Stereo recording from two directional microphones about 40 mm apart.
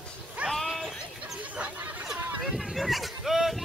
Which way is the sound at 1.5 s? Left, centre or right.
Right.